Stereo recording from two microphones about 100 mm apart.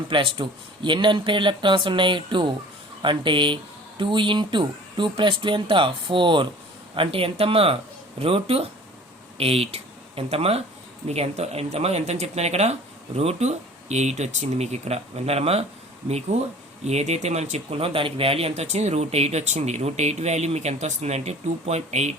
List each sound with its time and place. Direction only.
0.1 s speech: 60° right (ahead or behind)
6.9 s speech: 65° right (ahead or behind); by 22.1 s 90° right